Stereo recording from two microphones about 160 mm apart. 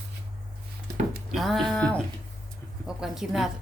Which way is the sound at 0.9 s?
50° right (ahead or behind).